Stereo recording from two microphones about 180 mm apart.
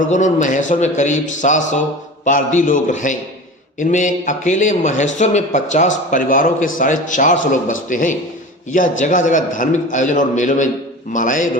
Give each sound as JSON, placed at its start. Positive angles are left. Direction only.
{"t": 0.1, "sound": "speech", "side_deg": 45}